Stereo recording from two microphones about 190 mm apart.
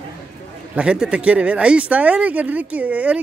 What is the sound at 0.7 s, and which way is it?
Speech, 5° right (ahead or behind).